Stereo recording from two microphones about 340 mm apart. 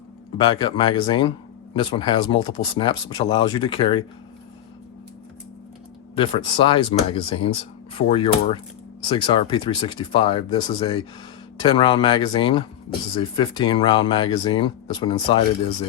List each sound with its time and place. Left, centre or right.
0.3 s speech: centre
6.1 s speech: centre